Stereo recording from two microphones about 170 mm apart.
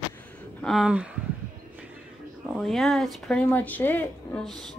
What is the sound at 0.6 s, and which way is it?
Speech, centre (ahead or behind).